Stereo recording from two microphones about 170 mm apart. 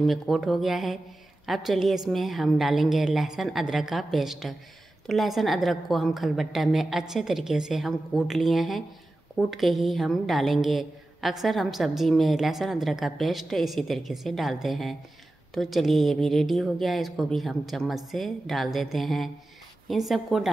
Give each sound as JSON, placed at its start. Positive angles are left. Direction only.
{"t": 0.0, "sound": "a woman's voice", "side_deg": 0}